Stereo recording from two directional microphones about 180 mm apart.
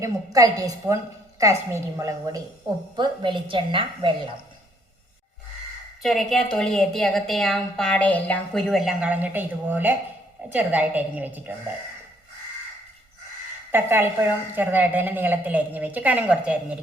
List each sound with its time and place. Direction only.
0.0 s a woman's voice: 20° right (ahead or behind)
6.0 s a woman's voice: centre (ahead or behind)
13.7 s a woman's voice: 10° right (ahead or behind)